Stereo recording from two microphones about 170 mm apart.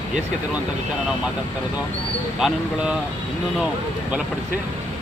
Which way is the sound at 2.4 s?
Centre (ahead or behind).